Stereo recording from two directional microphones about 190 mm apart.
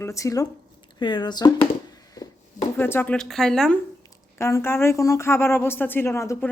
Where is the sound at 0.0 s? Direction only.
15° left (ahead or behind).